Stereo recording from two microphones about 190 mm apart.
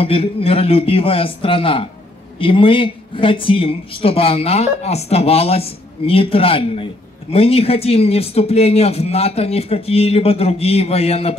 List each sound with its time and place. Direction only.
0.0 s a man's voice: 30° left (ahead or behind)